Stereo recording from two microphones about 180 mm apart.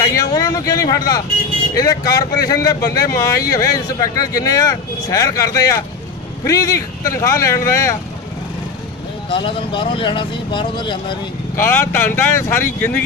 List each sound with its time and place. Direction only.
0.0 s a sound: 20° left (ahead or behind)
1.8 s speech: 20° left (ahead or behind)
9.3 s speech: 30° left (ahead or behind)
11.5 s speech: 15° left (ahead or behind)